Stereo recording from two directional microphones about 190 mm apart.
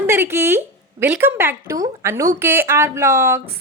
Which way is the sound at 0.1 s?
10° right (ahead or behind).